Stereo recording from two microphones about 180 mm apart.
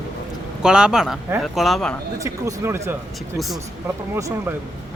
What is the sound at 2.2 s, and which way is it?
Speech, 15° right (ahead or behind).